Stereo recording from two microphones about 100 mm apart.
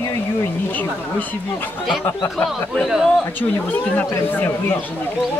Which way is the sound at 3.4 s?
15° left (ahead or behind).